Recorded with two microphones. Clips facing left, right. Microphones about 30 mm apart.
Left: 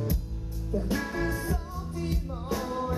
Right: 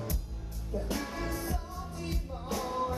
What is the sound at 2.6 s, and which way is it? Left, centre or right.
Music, centre.